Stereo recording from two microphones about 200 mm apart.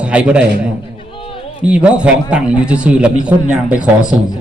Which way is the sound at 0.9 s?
25° left (ahead or behind).